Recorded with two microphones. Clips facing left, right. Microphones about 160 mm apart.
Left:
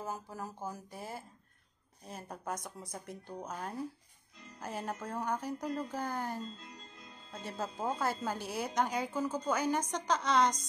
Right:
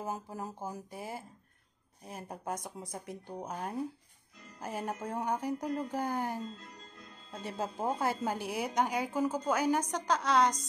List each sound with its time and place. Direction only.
0.0 s a woman's voice: 20° right (ahead or behind)
7.4 s a woman's voice: 15° right (ahead or behind)